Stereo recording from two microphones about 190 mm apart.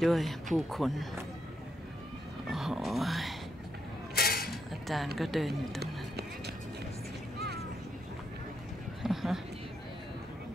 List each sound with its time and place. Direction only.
0.0 s speech: centre (ahead or behind)
2.4 s dog: centre (ahead or behind)
4.1 s a sound: 55° left (ahead or behind)
4.5 s speech: centre (ahead or behind)
5.8 s music: 60° right (ahead or behind)
9.0 s a sound: centre (ahead or behind)